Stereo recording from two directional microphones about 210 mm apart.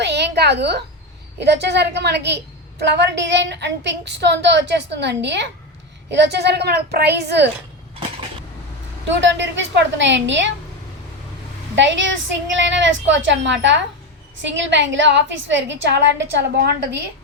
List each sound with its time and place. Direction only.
0.0 s a sound: 55° right (ahead or behind)
1.4 s a woman's voice: 55° right (ahead or behind)
9.0 s a woman's voice: 60° right (ahead or behind)
11.7 s a woman's voice: 60° right (ahead or behind)